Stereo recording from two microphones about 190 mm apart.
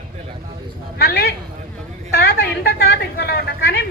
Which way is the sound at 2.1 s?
55° left (ahead or behind).